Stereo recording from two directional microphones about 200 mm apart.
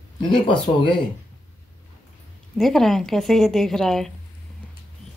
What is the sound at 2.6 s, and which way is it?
Speech, centre (ahead or behind).